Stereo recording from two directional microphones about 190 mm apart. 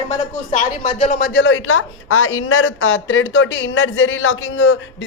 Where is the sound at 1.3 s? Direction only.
75° left (ahead or behind).